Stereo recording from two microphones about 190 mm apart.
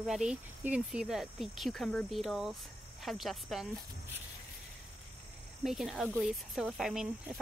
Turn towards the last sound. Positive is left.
turn(degrees=0)  # may be behind; listen again after turning